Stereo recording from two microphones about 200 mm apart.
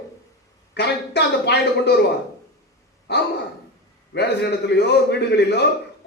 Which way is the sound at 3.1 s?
55° left (ahead or behind).